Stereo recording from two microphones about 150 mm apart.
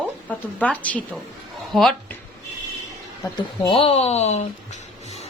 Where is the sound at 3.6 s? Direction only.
40° left (ahead or behind).